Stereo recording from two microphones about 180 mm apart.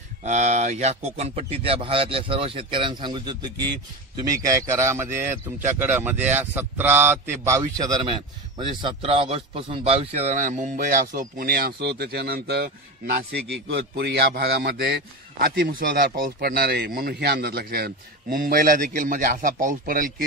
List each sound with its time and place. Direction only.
0.2 s speech: 40° right (ahead or behind)